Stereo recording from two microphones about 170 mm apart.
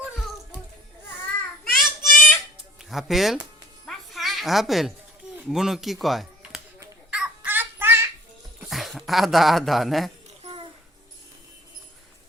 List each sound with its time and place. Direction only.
1.7 s child singing: centre (ahead or behind)
2.9 s speech: centre (ahead or behind)
3.8 s music: centre (ahead or behind)
5.4 s speech: 5° right (ahead or behind)
7.1 s a sound: 10° right (ahead or behind)
8.6 s speech: centre (ahead or behind)
10.4 s a sound: 30° right (ahead or behind)